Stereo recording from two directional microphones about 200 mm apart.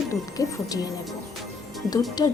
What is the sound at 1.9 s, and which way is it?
Speech, 20° left (ahead or behind).